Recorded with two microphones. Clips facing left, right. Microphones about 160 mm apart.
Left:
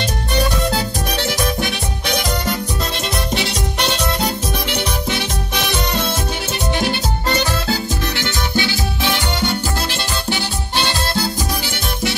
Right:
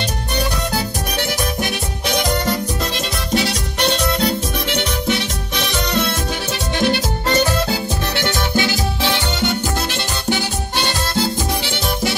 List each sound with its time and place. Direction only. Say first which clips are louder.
8.2 s music: right 4 dB; 50° right (ahead or behind)
10.8 s music: even; 15° right (ahead or behind)